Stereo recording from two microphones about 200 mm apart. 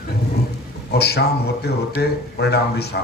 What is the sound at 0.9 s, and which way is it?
A man's voice, 55° left (ahead or behind).